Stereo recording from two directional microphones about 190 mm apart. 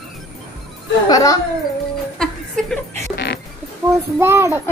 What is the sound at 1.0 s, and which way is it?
Speech, 20° left (ahead or behind).